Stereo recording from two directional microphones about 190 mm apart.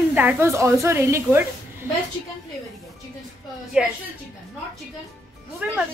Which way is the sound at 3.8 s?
5° right (ahead or behind).